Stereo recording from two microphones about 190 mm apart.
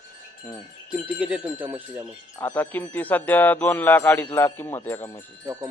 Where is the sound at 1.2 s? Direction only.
5° right (ahead or behind).